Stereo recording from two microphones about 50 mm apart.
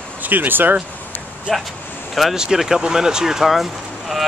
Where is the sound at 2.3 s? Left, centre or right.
Centre.